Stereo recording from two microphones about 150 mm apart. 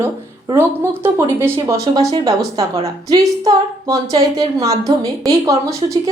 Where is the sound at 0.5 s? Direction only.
15° right (ahead or behind).